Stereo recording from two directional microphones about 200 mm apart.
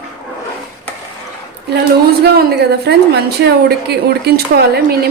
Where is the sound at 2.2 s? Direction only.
55° right (ahead or behind).